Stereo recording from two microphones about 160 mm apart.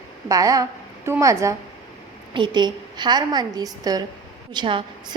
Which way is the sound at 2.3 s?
30° right (ahead or behind).